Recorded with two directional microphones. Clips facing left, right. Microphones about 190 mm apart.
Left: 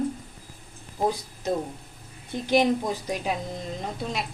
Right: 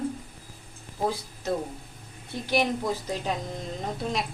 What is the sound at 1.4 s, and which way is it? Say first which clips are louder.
A woman's voice: left 2 dB; 15° left (ahead or behind).